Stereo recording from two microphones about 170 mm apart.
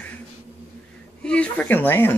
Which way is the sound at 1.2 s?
5° left (ahead or behind).